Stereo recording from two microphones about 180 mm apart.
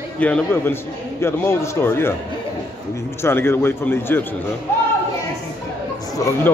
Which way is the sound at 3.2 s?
15° left (ahead or behind).